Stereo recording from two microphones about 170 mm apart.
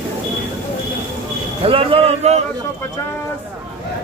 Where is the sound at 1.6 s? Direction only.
35° right (ahead or behind).